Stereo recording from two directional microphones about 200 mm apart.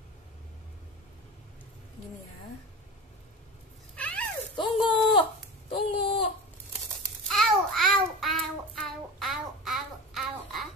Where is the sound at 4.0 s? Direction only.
5° left (ahead or behind).